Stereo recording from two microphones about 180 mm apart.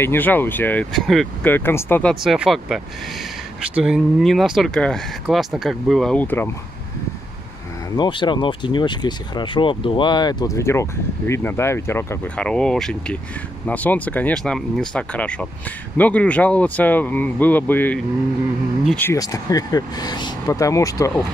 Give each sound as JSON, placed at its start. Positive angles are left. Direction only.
{"t": 0.0, "sound": "speech", "side_deg": 10}
{"t": 2.2, "sound": "speech", "side_deg": -5}
{"t": 7.9, "sound": "speech", "side_deg": 25}
{"t": 19.1, "sound": "speech", "side_deg": 20}